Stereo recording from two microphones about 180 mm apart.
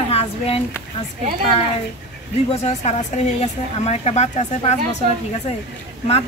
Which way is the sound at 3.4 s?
35° left (ahead or behind).